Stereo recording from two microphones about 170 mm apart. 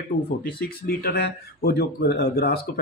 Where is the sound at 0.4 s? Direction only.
60° left (ahead or behind).